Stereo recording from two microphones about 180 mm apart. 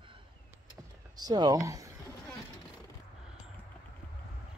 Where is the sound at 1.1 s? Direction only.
20° right (ahead or behind).